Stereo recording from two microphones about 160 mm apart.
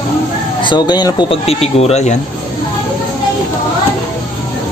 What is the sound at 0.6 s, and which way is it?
Speech, 30° left (ahead or behind).